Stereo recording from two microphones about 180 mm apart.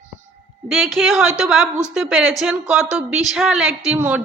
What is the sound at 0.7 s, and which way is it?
A woman's voice, centre (ahead or behind).